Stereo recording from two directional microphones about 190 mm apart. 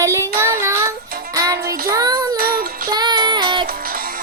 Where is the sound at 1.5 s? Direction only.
50° right (ahead or behind).